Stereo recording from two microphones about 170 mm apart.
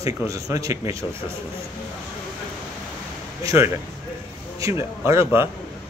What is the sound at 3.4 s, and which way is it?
Speech, 15° right (ahead or behind).